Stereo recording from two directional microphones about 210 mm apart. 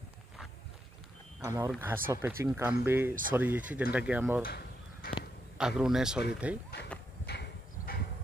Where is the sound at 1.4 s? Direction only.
15° right (ahead or behind).